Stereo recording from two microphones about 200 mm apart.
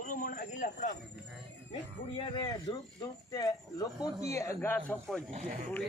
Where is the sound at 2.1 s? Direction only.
25° left (ahead or behind).